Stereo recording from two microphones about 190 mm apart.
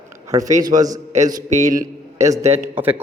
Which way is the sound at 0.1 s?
15° right (ahead or behind).